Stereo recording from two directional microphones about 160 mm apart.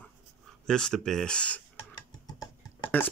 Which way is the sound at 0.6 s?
5° left (ahead or behind).